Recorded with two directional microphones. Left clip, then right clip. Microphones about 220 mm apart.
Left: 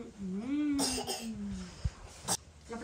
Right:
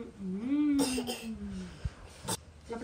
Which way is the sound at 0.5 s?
5° left (ahead or behind).